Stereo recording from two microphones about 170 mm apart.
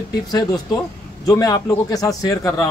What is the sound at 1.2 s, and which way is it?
Speech, 20° left (ahead or behind).